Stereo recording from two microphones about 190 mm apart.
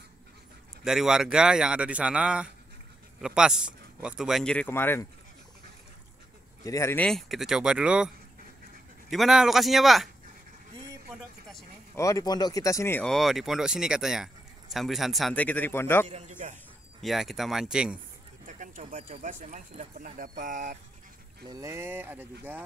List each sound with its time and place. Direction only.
0.8 s speech: 5° right (ahead or behind)
6.6 s speech: 15° left (ahead or behind)
7.1 s speech: centre (ahead or behind)
9.1 s speech: centre (ahead or behind)
11.9 s speech: 15° left (ahead or behind)
16.1 s a man's voice: 40° right (ahead or behind)
17.0 s speech: centre (ahead or behind)
18.4 s speech: 45° right (ahead or behind)
21.5 s speech: 15° right (ahead or behind)